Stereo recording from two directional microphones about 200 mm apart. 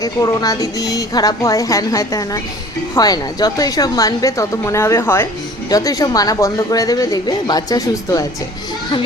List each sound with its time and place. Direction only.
0.0 s speech: 20° left (ahead or behind)